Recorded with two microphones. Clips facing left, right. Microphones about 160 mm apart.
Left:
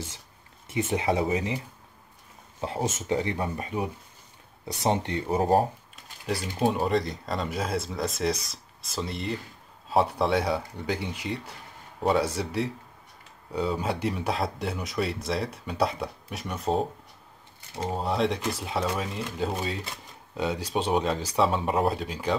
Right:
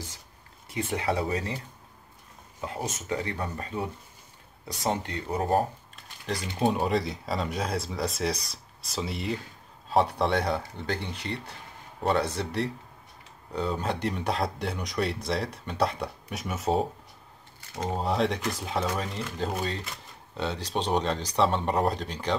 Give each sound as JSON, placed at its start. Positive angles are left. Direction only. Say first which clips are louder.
{"t": 0.7, "sound": "speech", "louder": "left 3 dB", "side_deg": 20}
{"t": 2.6, "sound": "speech", "louder": "left 4 dB", "side_deg": 25}
{"t": 6.2, "sound": "a man's voice", "louder": "left 1 dB", "side_deg": 5}